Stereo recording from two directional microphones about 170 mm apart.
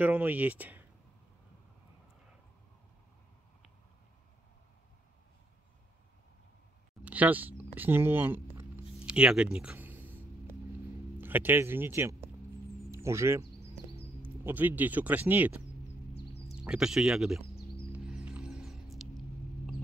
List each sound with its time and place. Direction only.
0.0 s speech: 10° right (ahead or behind)
7.1 s speech: 10° right (ahead or behind)
9.0 s a sound: 5° right (ahead or behind)
11.1 s speech: 10° right (ahead or behind)
17.9 s music: 5° right (ahead or behind)